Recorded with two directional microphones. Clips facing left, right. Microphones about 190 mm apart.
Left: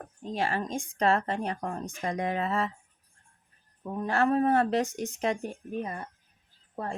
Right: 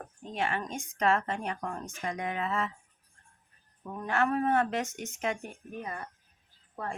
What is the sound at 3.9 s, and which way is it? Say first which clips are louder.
Speech: left 3 dB; 30° left (ahead or behind).